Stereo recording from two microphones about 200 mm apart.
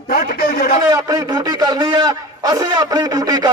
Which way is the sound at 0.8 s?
20° right (ahead or behind).